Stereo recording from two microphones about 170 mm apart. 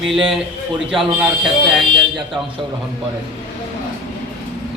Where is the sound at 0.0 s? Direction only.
Centre (ahead or behind).